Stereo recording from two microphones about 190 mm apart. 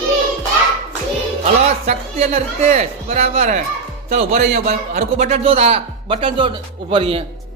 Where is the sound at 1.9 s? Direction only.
35° right (ahead or behind).